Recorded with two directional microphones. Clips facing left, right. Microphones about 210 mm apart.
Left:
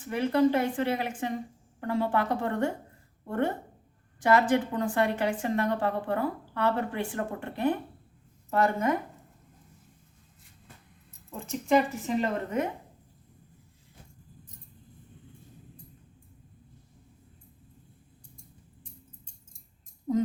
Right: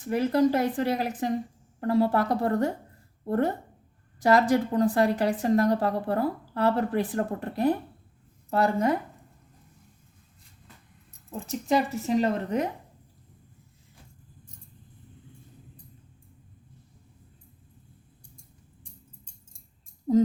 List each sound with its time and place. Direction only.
0.0 s a woman's voice: 40° right (ahead or behind)
11.4 s a woman's voice: 35° right (ahead or behind)
20.1 s music: 30° right (ahead or behind)